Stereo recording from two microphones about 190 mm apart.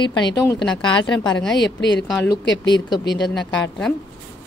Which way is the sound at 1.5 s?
65° left (ahead or behind).